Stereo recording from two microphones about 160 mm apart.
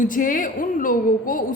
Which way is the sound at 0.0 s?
55° left (ahead or behind).